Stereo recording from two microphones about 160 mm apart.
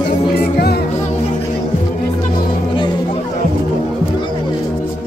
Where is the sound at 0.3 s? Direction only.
80° left.